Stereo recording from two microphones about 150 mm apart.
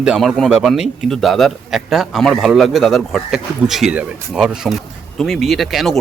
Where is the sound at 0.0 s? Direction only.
5° right (ahead or behind).